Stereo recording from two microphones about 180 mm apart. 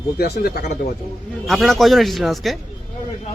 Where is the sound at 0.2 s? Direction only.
60° left (ahead or behind).